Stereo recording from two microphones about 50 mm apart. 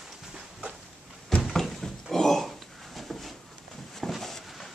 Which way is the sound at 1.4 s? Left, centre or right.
Centre.